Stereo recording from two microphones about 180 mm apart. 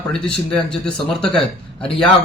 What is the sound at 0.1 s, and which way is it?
Speech, 5° left (ahead or behind).